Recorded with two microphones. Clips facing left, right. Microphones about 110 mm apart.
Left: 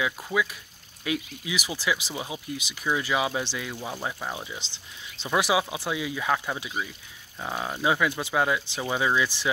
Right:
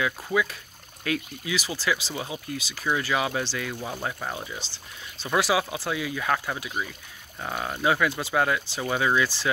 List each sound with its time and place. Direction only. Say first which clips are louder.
0.0 s speech: right 1 dB; 10° left (ahead or behind)